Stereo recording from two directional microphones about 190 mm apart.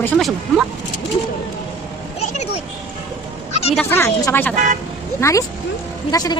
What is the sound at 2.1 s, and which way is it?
Vehicle, 35° left (ahead or behind).